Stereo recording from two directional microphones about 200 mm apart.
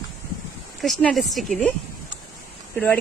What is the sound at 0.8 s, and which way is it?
Speech, centre (ahead or behind).